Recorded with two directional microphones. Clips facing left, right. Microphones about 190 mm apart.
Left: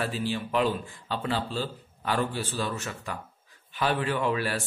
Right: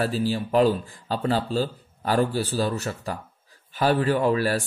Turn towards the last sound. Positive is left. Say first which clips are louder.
# right 6 dB
turn(degrees=-40)  # may be behind; listen again after turning